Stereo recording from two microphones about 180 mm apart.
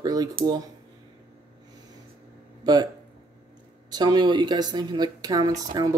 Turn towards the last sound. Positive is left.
turn(degrees=-25)  # may be behind; listen again after turning